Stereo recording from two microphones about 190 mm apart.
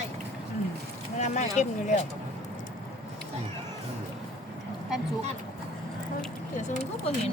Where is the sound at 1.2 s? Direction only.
35° left (ahead or behind).